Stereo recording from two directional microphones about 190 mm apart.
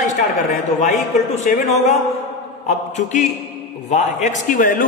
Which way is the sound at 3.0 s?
40° left (ahead or behind).